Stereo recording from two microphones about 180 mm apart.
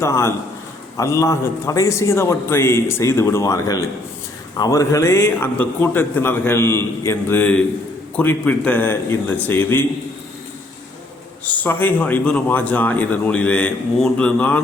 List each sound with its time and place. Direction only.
0.0 s a man's voice: 15° left (ahead or behind)
11.4 s a man's voice: 10° left (ahead or behind)